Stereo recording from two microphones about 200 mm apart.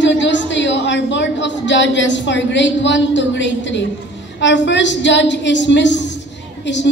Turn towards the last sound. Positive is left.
turn(degrees=60)  # may be behind; listen again after turning